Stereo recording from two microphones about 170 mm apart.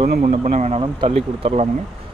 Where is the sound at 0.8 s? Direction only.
35° right (ahead or behind).